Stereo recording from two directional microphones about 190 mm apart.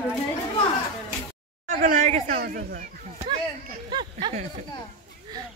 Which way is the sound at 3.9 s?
25° right (ahead or behind).